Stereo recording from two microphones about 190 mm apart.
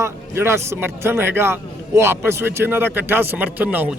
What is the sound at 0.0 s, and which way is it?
Speech, 15° right (ahead or behind).